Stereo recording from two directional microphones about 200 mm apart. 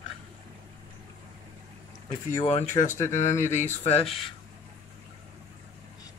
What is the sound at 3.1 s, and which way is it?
Speech, 35° left (ahead or behind).